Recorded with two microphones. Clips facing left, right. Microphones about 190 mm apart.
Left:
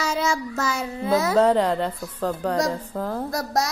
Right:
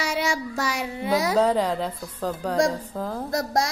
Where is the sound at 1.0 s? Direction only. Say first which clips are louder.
Left 2 dB; 15° right (ahead or behind).